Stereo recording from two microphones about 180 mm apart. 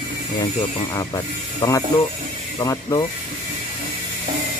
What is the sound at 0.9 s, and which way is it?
Speech, 20° left (ahead or behind).